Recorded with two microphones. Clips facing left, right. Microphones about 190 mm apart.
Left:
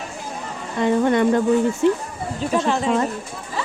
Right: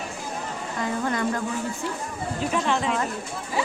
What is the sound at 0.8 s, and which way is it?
A woman's voice, 25° left (ahead or behind).